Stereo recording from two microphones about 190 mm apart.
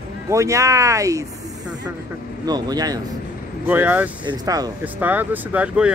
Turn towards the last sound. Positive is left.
turn(degrees=-5)  # may be behind; listen again after turning